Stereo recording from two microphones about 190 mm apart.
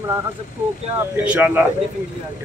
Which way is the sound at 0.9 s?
10° right (ahead or behind).